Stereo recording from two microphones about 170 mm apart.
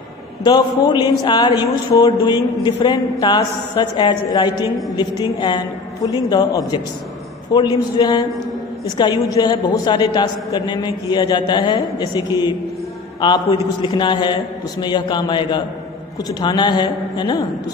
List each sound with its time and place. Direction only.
0.4 s a man's voice: 25° left (ahead or behind)